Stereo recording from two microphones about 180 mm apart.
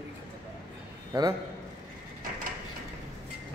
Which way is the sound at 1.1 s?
15° right (ahead or behind).